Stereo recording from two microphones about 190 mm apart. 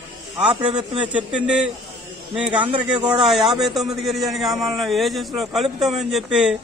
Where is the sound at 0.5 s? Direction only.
25° right (ahead or behind).